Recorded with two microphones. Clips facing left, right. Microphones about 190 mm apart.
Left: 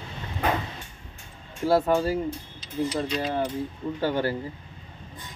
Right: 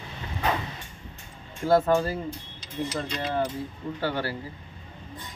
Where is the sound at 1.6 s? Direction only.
10° left (ahead or behind).